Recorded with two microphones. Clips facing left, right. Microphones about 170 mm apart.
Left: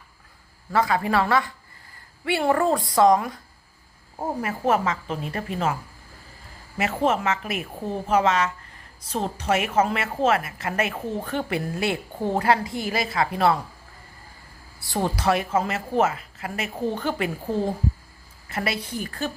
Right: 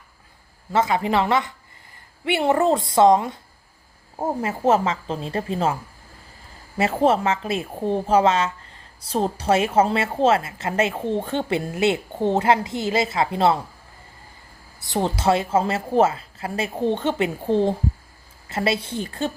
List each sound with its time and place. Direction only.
0.7 s a woman's voice: 20° right (ahead or behind)
6.7 s a woman's voice: 30° right (ahead or behind)
14.8 s a woman's voice: 20° right (ahead or behind)